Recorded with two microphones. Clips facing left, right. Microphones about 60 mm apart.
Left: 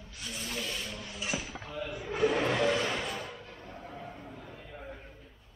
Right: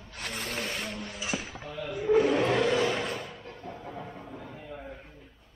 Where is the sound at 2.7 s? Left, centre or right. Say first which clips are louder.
Right 4 dB; centre.